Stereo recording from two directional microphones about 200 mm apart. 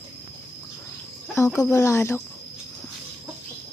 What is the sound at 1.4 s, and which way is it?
Speech, 15° left (ahead or behind).